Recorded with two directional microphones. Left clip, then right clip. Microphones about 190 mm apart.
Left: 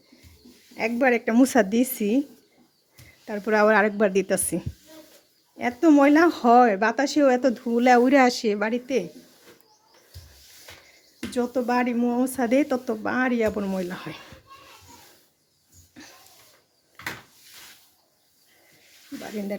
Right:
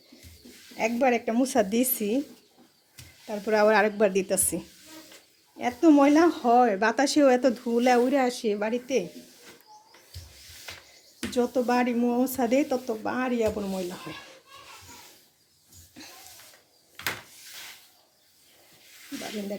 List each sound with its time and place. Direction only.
0.8 s a woman's voice: 15° left (ahead or behind)
1.7 s speech: 15° left (ahead or behind)
3.2 s speech: 20° left (ahead or behind)
11.2 s a woman's voice: 10° left (ahead or behind); by 14.3 s 25° left (ahead or behind)